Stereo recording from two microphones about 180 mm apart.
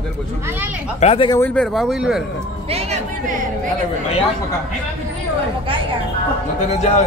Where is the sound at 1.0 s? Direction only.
35° left (ahead or behind).